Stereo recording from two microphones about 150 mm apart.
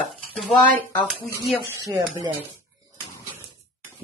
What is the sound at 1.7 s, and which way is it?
Speech, 25° right (ahead or behind).